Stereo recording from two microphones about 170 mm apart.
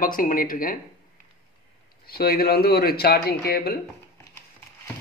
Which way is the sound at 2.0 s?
65° left (ahead or behind).